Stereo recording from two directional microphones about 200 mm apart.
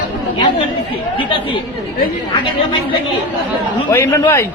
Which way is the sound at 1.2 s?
25° left (ahead or behind).